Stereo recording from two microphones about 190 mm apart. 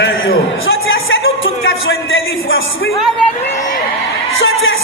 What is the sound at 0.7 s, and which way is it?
Speech, 90° left.